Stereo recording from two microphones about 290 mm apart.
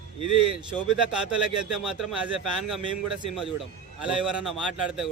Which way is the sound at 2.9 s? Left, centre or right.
Right.